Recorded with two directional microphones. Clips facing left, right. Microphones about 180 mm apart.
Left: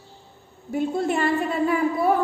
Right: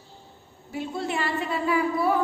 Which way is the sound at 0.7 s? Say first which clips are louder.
Left 6 dB; 50° left (ahead or behind).